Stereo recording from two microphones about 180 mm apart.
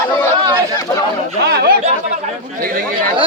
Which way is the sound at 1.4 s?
60° right (ahead or behind).